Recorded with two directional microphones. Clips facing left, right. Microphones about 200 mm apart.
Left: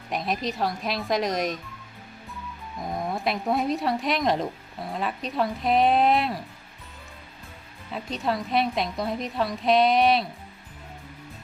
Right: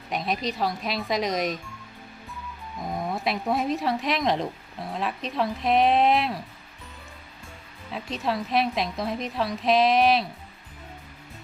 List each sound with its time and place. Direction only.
0.1 s speech: centre (ahead or behind)
2.7 s speech: centre (ahead or behind)
7.9 s speech: centre (ahead or behind)